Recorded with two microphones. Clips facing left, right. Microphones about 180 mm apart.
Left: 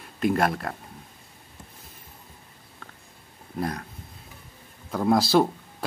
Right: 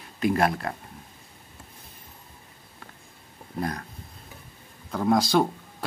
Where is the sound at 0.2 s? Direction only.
Centre (ahead or behind).